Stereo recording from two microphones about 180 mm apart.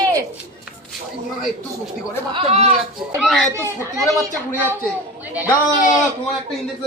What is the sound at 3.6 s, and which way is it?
Speech, 15° right (ahead or behind).